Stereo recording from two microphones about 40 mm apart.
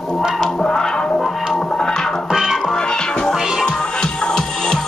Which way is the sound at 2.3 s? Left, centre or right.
Centre.